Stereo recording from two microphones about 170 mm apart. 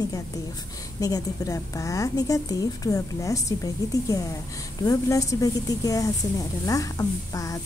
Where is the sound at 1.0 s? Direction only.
20° left (ahead or behind).